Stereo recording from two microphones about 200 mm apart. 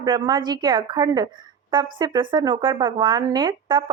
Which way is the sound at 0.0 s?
20° right (ahead or behind).